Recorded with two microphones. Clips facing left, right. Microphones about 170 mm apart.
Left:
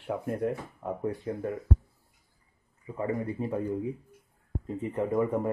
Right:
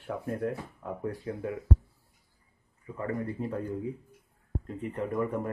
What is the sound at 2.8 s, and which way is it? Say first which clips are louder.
Speech: left 2 dB; 15° left (ahead or behind).